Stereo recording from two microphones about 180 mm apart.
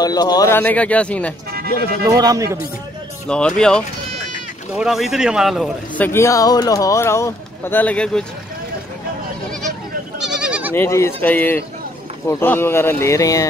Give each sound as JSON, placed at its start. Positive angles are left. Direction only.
{"t": 0.0, "sound": "speech", "side_deg": 20}
{"t": 2.0, "sound": "a man's voice", "side_deg": -20}
{"t": 3.3, "sound": "a man's voice", "side_deg": 5}
{"t": 6.0, "sound": "speech", "side_deg": 15}
{"t": 10.2, "sound": "goat", "side_deg": -5}
{"t": 10.7, "sound": "speech", "side_deg": 15}